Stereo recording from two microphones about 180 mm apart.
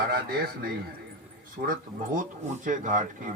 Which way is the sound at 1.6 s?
50° right (ahead or behind).